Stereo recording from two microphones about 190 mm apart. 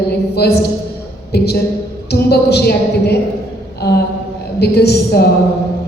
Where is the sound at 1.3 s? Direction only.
55° left (ahead or behind).